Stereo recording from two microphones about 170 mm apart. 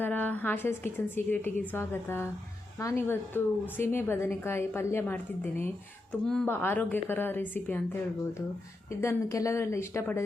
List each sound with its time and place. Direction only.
0.0 s a woman's voice: 10° left (ahead or behind)
8.9 s a woman's voice: 15° left (ahead or behind)